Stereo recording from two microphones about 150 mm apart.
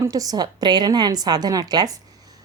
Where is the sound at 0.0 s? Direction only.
25° right (ahead or behind).